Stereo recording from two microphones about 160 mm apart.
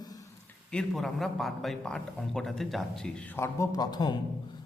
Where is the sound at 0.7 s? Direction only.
5° left (ahead or behind).